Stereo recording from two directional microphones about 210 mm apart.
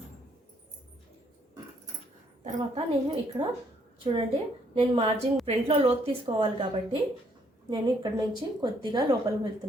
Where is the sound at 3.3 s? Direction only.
20° right (ahead or behind).